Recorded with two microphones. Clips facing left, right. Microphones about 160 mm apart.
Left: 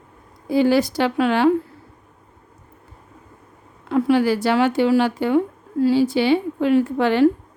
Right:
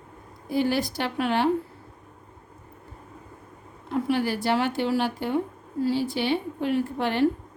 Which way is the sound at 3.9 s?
90° left.